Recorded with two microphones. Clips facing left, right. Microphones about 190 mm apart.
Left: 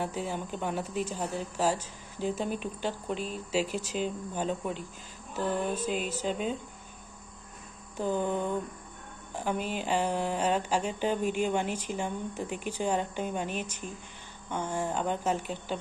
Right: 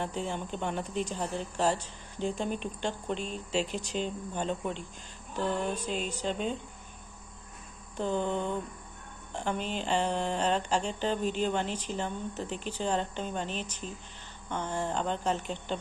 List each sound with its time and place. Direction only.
0.0 s speech: 5° left (ahead or behind)
8.0 s speech: 10° left (ahead or behind)